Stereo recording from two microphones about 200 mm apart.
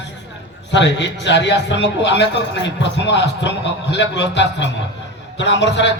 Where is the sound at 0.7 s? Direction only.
65° left (ahead or behind).